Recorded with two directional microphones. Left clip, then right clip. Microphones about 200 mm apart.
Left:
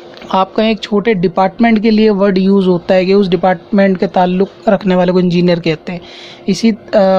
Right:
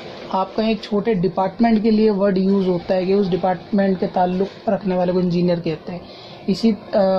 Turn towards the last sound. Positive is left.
turn(degrees=30)  # may be behind; listen again after turning